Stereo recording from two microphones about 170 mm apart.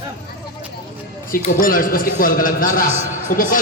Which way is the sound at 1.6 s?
55° left (ahead or behind).